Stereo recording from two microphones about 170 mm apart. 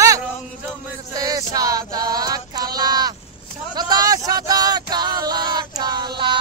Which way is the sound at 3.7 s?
25° right (ahead or behind).